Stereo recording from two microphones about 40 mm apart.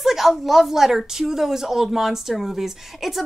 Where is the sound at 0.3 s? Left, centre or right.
Centre.